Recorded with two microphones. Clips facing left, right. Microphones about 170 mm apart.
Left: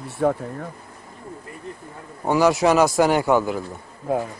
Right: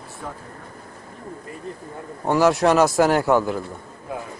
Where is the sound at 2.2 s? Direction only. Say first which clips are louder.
Even; centre (ahead or behind).